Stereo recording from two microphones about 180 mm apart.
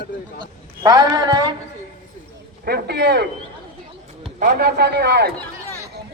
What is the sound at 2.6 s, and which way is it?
Speech, 60° right (ahead or behind).